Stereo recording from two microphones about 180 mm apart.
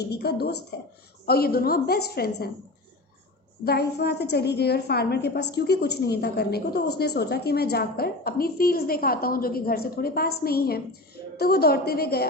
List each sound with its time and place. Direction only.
0.0 s a woman's voice: 65° left (ahead or behind)
3.7 s a woman's voice: 65° left (ahead or behind)